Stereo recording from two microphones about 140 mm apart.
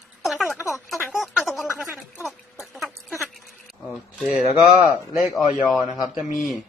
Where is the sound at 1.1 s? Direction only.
5° right (ahead or behind).